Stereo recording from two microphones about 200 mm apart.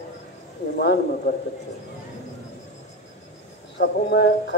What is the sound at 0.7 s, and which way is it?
Speech, 55° left (ahead or behind).